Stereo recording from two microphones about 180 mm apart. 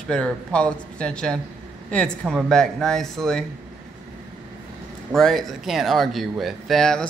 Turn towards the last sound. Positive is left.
turn(degrees=5)  # may be behind; listen again after turning